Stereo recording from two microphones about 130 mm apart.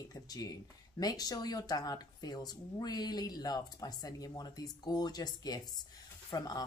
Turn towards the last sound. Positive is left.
turn(degrees=30)  # may be behind; listen again after turning